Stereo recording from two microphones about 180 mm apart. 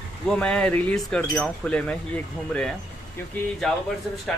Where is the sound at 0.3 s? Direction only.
5° left (ahead or behind).